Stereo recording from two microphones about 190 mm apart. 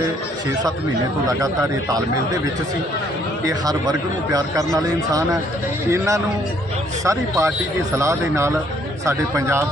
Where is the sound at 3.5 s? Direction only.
20° right (ahead or behind).